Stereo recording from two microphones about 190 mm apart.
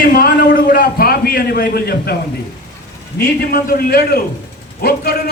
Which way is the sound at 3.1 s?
50° left (ahead or behind).